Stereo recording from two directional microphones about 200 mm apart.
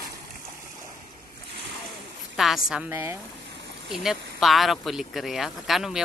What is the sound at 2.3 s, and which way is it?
Speech, centre (ahead or behind).